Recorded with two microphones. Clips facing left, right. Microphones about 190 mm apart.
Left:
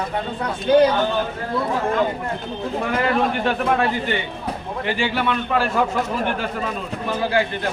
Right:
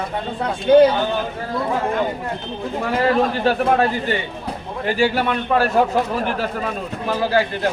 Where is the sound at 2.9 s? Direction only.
35° right (ahead or behind).